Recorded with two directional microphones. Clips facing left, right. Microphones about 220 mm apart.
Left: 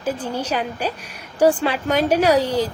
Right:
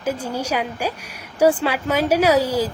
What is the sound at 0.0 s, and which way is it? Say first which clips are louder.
A woman's voice: even; 10° right (ahead or behind).